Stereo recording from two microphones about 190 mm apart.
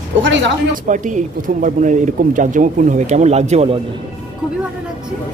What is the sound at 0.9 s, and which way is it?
Speech, 40° right (ahead or behind).